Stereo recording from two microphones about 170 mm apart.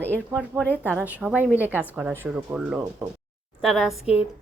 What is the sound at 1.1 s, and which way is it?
A woman's voice, 10° right (ahead or behind).